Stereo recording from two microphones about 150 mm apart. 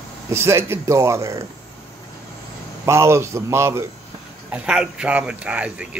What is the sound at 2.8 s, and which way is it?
Speech, 20° right (ahead or behind).